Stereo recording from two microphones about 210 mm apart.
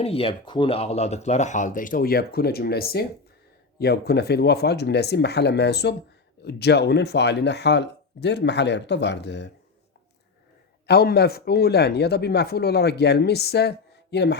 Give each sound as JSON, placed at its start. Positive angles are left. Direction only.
{"t": 0.0, "sound": "speech", "side_deg": 25}
{"t": 10.8, "sound": "speech", "side_deg": 50}